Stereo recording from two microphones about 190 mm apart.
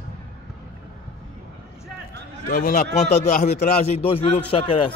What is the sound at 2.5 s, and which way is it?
A man's voice, 45° left (ahead or behind).